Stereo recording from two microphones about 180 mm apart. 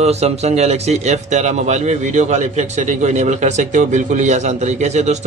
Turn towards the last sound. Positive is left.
turn(degrees=-40)  # may be behind; listen again after turning